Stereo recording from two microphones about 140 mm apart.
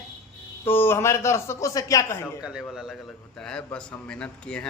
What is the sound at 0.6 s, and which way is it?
A man's voice, 15° left (ahead or behind).